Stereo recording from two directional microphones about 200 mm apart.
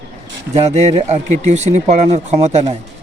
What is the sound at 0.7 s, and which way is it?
Speech, 35° right (ahead or behind).